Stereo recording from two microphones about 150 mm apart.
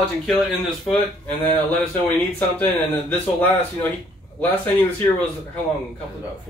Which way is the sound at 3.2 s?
10° left (ahead or behind).